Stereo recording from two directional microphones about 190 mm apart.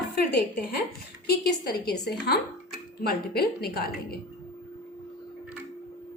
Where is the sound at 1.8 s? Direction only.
55° left (ahead or behind).